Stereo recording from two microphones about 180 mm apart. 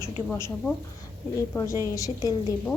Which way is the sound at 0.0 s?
15° left (ahead or behind).